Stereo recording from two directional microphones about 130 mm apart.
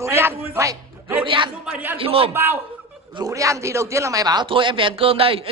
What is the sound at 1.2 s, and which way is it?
A man's voice, 40° right (ahead or behind).